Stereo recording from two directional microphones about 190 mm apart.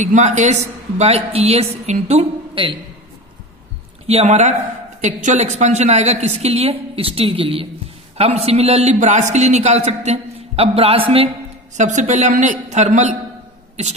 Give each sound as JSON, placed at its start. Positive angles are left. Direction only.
{"t": 0.0, "sound": "a man's voice", "side_deg": -40}
{"t": 4.1, "sound": "a man's voice", "side_deg": -35}